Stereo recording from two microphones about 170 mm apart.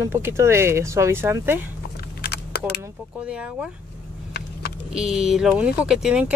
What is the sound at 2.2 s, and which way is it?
Typing, 70° left (ahead or behind).